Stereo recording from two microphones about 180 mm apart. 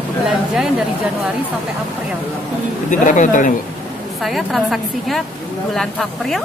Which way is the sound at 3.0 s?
45° left (ahead or behind).